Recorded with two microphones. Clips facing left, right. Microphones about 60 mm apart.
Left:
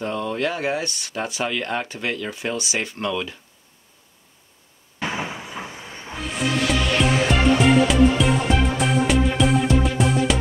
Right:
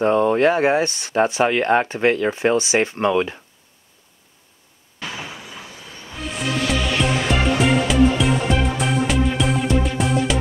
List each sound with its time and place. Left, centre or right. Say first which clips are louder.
0.0 s speech: right 9 dB; right
5.0 s a sound: left 4 dB; left
6.1 s music: left 1 dB; centre